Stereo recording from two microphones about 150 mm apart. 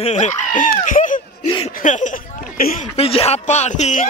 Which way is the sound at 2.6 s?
80° left.